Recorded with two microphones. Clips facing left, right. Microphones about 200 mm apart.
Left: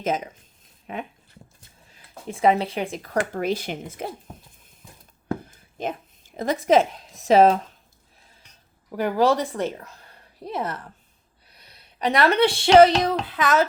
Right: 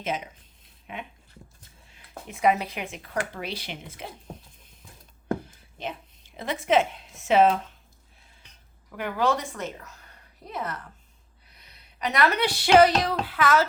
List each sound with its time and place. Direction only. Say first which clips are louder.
0.6 s a sound: left 6 dB; 40° left (ahead or behind)
1.9 s speech: left 6 dB; 30° left (ahead or behind)
5.7 s a woman's voice: left 6 dB; 45° left (ahead or behind)
9.0 s a woman's voice: left 6 dB; 35° left (ahead or behind); by 13.7 s 20° left (ahead or behind)